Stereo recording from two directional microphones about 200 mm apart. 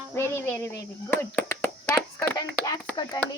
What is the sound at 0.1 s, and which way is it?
A child's voice, 10° left (ahead or behind).